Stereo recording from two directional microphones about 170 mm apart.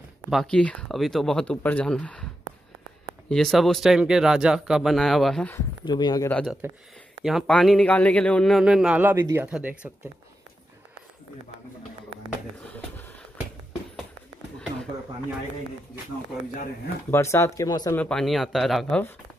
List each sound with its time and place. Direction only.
0.3 s a man's voice: 5° left (ahead or behind)
3.3 s a man's voice: 5° left (ahead or behind)
5.9 s speech: 25° left (ahead or behind)
6.2 s a man's voice: 10° left (ahead or behind); by 9.8 s 10° right (ahead or behind)
17.1 s speech: 15° left (ahead or behind)
17.9 s a man's voice: 5° left (ahead or behind)